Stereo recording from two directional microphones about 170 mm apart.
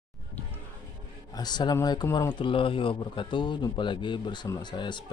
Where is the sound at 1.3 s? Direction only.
25° left (ahead or behind).